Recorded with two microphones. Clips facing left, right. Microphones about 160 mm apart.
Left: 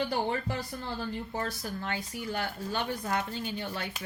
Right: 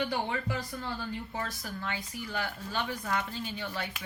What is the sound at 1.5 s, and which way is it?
Speech, 45° left (ahead or behind).